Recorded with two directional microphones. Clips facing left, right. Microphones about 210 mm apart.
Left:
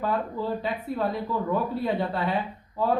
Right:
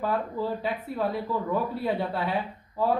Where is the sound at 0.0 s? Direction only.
5° right (ahead or behind).